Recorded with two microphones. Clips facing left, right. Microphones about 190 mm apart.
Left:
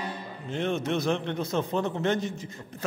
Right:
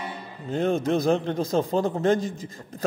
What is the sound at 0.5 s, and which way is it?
Music, 35° right (ahead or behind).